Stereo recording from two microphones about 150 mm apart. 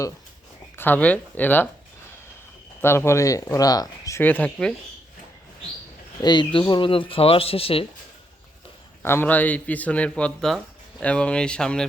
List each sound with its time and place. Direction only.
0.8 s speech: 10° left (ahead or behind)
2.8 s speech: 15° left (ahead or behind)
4.2 s speech: 10° left (ahead or behind)
6.2 s speech: 30° left (ahead or behind)
9.0 s speech: 15° left (ahead or behind)